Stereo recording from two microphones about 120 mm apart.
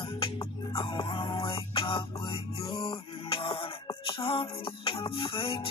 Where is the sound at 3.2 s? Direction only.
50° left (ahead or behind).